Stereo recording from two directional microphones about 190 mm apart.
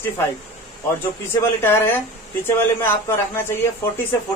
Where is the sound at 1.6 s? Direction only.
10° left (ahead or behind).